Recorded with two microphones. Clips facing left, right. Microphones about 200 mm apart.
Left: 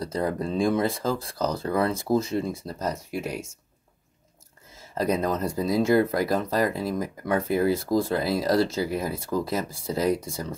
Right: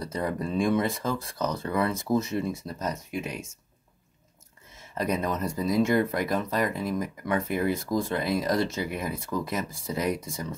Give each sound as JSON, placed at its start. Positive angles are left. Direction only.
{"t": 0.0, "sound": "speech", "side_deg": 30}
{"t": 3.1, "sound": "speech", "side_deg": 5}
{"t": 4.9, "sound": "speech", "side_deg": 35}